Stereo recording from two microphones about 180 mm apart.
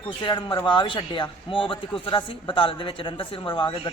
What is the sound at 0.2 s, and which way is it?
A man's voice, 25° left (ahead or behind).